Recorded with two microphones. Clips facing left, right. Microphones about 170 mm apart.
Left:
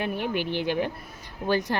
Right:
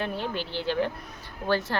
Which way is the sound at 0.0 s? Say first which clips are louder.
Left 3 dB; 15° left (ahead or behind).